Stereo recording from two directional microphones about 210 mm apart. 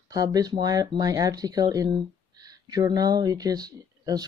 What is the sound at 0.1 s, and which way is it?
Speech, 15° right (ahead or behind).